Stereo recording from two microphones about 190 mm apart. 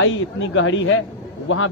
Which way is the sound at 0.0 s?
90° left.